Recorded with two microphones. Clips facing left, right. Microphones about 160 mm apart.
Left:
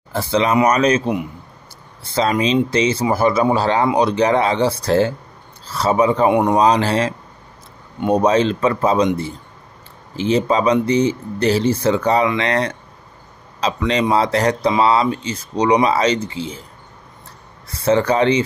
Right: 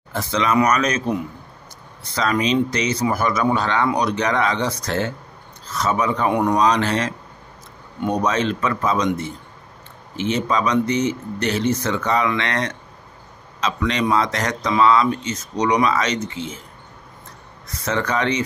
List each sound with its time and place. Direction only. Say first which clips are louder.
0.1 s speech: left 3 dB; 30° left (ahead or behind)
2.1 s speech: left 3 dB; 30° left (ahead or behind)
6.6 s speech: left 3 dB; 30° left (ahead or behind)
17.6 s speech: left 8 dB; 30° left (ahead or behind)